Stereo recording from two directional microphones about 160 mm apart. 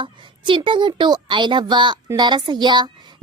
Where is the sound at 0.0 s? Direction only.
30° right (ahead or behind).